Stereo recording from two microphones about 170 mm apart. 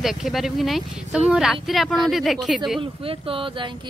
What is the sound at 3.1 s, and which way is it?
Speech, 30° right (ahead or behind).